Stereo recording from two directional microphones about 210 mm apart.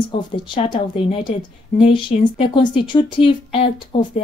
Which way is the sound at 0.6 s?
30° left (ahead or behind).